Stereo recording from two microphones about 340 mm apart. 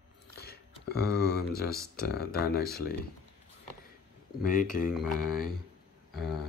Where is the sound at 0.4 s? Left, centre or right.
Left.